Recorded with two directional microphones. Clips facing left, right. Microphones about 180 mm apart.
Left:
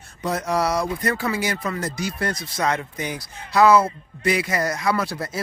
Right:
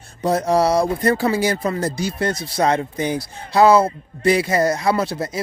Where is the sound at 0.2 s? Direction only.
30° right (ahead or behind).